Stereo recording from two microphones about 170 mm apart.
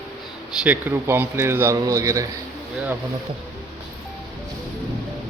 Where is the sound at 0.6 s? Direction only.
10° right (ahead or behind).